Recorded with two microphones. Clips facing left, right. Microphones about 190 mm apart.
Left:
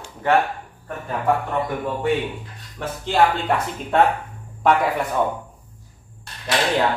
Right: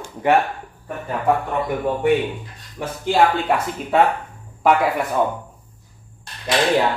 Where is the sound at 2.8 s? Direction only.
10° right (ahead or behind).